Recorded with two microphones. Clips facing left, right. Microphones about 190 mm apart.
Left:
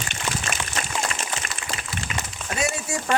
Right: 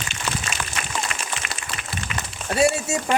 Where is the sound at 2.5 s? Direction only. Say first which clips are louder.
Right 7 dB; 35° right (ahead or behind).